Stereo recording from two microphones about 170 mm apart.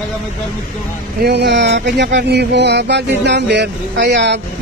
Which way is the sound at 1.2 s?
80° right.